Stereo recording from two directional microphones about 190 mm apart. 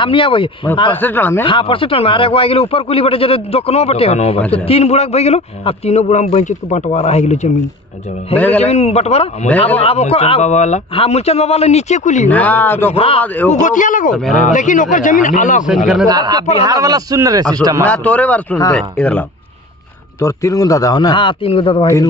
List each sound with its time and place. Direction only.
0.0 s a man's voice: 25° left (ahead or behind)
0.9 s speech: 10° left (ahead or behind)
1.4 s a man's voice: 25° left (ahead or behind)
8.4 s speech: 10° left (ahead or behind)
8.6 s a man's voice: 35° left (ahead or behind)
9.5 s speech: 10° left (ahead or behind)
9.8 s a man's voice: 30° left (ahead or behind)
12.3 s speech: 10° left (ahead or behind)
12.9 s a man's voice: 30° left (ahead or behind)
13.2 s speech: 10° left (ahead or behind)
13.5 s speech: 40° left (ahead or behind)
16.1 s a man's voice: 20° right (ahead or behind)
17.8 s speech: 10° left (ahead or behind)
20.2 s a man's voice: 15° left (ahead or behind)